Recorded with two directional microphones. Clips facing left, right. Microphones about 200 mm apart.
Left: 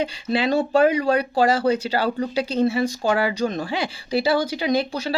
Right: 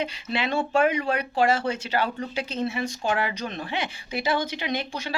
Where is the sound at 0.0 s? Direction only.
35° left (ahead or behind).